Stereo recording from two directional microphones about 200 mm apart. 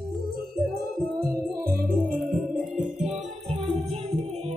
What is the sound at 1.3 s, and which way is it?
Music, 50° right (ahead or behind).